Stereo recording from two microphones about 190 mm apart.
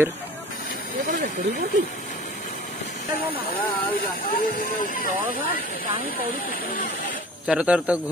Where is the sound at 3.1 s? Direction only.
50° left (ahead or behind).